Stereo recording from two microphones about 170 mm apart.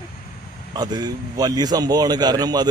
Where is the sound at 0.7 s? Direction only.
25° right (ahead or behind).